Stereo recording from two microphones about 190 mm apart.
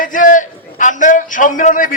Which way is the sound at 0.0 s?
45° left (ahead or behind).